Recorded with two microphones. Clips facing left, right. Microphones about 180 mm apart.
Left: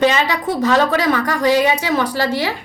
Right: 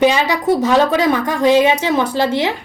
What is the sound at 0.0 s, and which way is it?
A woman's voice, 15° right (ahead or behind).